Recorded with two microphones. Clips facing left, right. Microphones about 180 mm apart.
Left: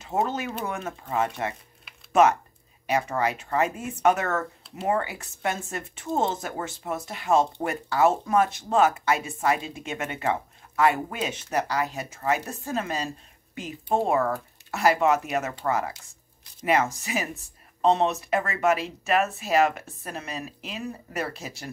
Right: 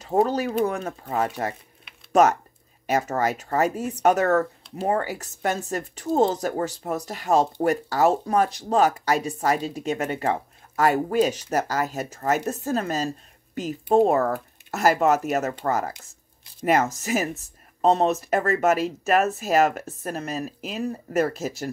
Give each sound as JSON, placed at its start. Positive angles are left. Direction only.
{"t": 0.0, "sound": "speech", "side_deg": -35}
{"t": 2.9, "sound": "speech", "side_deg": -40}
{"t": 14.7, "sound": "speech", "side_deg": -40}